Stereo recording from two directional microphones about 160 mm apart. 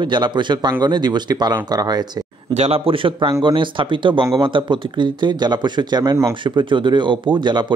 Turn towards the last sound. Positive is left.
turn(degrees=-30)  # may be behind; listen again after turning